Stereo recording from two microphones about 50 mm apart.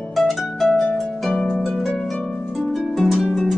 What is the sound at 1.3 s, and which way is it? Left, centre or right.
Harp, left.